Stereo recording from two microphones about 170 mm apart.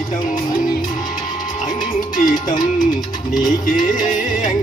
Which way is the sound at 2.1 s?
50° left (ahead or behind).